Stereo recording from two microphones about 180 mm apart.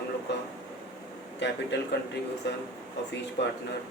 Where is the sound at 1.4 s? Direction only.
75° left (ahead or behind).